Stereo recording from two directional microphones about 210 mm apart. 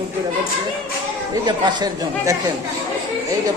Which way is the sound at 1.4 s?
20° right (ahead or behind).